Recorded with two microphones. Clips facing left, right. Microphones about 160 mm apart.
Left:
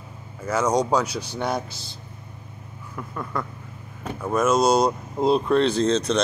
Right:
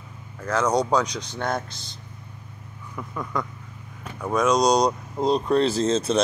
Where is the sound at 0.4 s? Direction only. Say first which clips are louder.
Left 1 dB; 10° left (ahead or behind).